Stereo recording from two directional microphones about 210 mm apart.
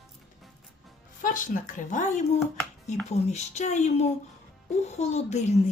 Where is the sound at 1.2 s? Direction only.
40° left (ahead or behind).